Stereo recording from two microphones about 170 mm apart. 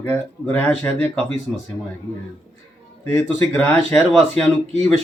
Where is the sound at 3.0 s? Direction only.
15° left (ahead or behind).